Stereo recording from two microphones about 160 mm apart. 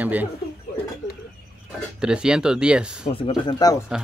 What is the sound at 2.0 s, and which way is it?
Speech, 5° right (ahead or behind).